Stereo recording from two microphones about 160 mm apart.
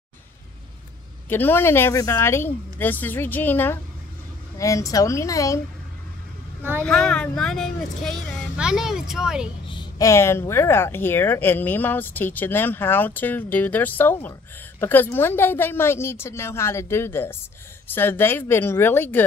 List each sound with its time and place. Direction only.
1.3 s a woman's voice: 15° left (ahead or behind)
6.8 s speech: 5° left (ahead or behind)
9.7 s speech: 25° left (ahead or behind)